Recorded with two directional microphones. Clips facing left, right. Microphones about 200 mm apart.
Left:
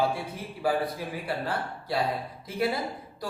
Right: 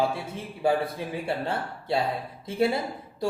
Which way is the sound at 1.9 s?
25° right (ahead or behind).